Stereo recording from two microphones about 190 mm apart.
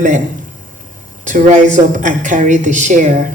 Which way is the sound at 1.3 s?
40° right (ahead or behind).